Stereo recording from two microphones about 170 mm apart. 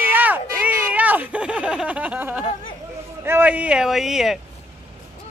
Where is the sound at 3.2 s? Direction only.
10° right (ahead or behind).